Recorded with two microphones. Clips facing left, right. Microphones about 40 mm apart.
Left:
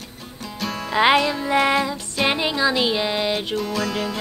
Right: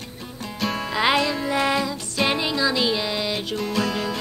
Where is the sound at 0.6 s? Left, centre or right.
Centre.